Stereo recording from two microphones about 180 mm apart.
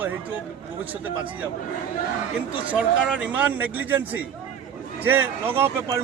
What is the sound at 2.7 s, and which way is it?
A man's voice, 5° right (ahead or behind).